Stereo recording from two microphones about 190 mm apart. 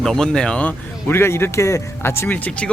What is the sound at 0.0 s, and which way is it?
Speech, 5° left (ahead or behind).